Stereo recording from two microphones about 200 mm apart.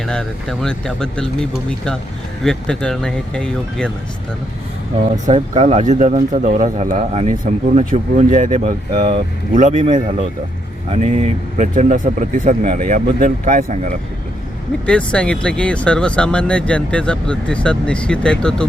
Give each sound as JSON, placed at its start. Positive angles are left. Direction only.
{"t": 0.0, "sound": "speech", "side_deg": 5}
{"t": 5.1, "sound": "speech", "side_deg": -35}
{"t": 14.8, "sound": "speech", "side_deg": 5}